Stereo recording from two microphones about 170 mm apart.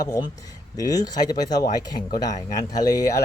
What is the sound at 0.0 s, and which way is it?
Speech, 20° left (ahead or behind).